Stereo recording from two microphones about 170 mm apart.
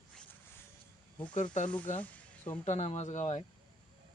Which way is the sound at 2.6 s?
40° left (ahead or behind).